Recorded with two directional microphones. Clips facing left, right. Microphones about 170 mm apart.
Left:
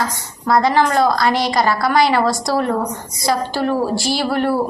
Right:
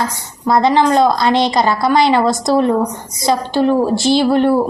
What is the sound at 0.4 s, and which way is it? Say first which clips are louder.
A woman's voice: right 3 dB; 20° right (ahead or behind).